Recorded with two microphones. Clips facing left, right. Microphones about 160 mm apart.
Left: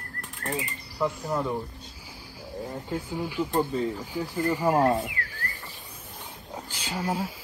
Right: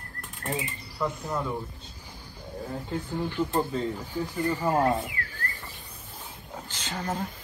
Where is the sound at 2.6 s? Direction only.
10° left (ahead or behind).